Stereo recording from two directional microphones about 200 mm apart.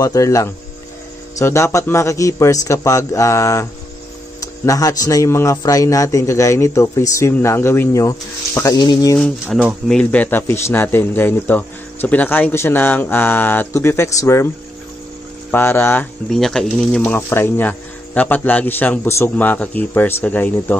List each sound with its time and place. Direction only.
0.0 s speech: 15° left (ahead or behind)
9.2 s speech: centre (ahead or behind)
15.5 s speech: 10° left (ahead or behind)